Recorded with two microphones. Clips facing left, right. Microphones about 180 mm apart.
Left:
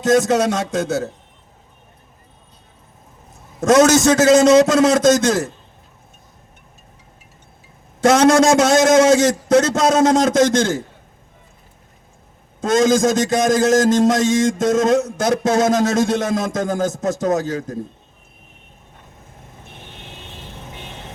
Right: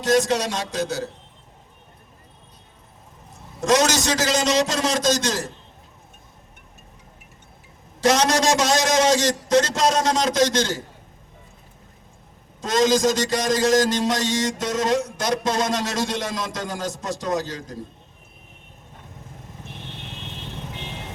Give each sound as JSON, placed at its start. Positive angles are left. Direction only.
{"t": 0.0, "sound": "a man's voice", "side_deg": 50}
{"t": 3.6, "sound": "a man's voice", "side_deg": 50}
{"t": 8.0, "sound": "a man's voice", "side_deg": 50}
{"t": 12.6, "sound": "a man's voice", "side_deg": 50}